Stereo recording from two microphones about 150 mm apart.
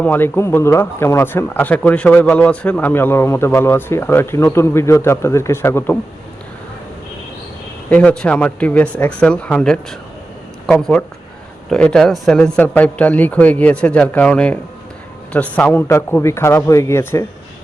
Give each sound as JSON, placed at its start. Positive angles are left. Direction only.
{"t": 0.0, "sound": "speech", "side_deg": 15}
{"t": 7.9, "sound": "speech", "side_deg": 10}